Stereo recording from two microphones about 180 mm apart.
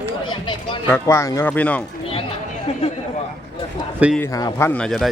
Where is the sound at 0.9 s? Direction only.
15° left (ahead or behind).